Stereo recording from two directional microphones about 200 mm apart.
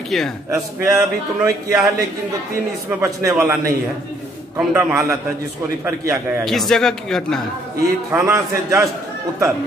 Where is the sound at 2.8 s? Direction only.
15° right (ahead or behind).